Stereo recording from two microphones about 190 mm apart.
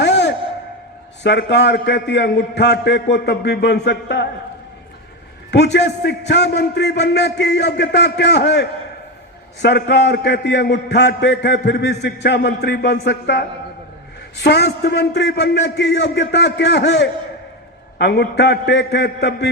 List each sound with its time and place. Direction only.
0.0 s a sound: 65° left (ahead or behind)
1.2 s a man's voice: 65° left (ahead or behind)
5.5 s a man's voice: 65° left (ahead or behind)
14.4 s a man's voice: 60° left (ahead or behind)